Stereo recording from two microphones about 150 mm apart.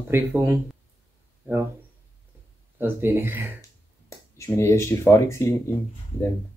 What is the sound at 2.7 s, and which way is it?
Speech, 15° right (ahead or behind).